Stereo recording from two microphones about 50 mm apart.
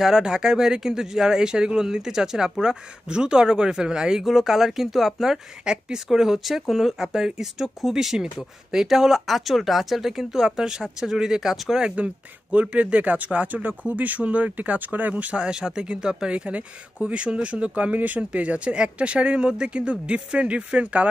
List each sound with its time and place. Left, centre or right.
0.0 s speech: centre
11.8 s speech: right